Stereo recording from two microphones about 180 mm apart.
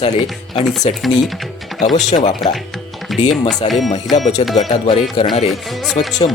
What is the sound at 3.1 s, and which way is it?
Music, centre (ahead or behind).